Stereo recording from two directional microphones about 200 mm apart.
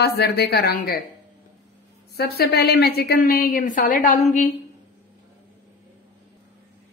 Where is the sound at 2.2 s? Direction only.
50° left (ahead or behind).